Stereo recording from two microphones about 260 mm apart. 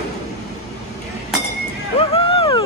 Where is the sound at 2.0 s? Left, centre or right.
Left.